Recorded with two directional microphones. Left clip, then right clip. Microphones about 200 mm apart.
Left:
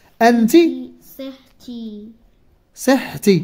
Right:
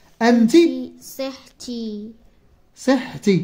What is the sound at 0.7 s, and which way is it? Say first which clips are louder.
Speech: right 2 dB; 50° right (ahead or behind).